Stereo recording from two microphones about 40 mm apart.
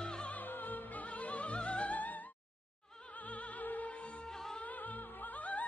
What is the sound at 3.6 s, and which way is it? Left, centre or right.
Music, left.